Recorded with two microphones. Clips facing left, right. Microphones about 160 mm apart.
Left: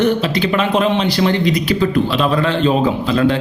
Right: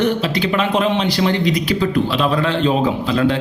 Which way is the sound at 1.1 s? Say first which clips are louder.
Left 2 dB; 50° left (ahead or behind).